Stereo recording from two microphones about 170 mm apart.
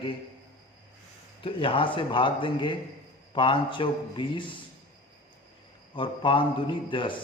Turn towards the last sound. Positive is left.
turn(degrees=30)  # may be behind; listen again after turning